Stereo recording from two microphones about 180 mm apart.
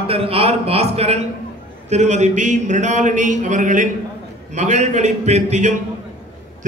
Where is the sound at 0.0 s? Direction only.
30° right (ahead or behind).